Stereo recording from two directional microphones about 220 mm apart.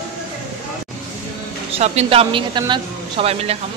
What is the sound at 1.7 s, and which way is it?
Speech, 25° right (ahead or behind).